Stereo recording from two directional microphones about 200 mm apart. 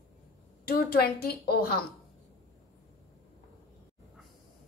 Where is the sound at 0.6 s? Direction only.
50° left (ahead or behind).